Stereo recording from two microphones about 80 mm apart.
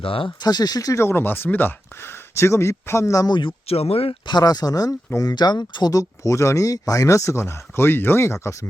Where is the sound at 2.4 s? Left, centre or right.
Left.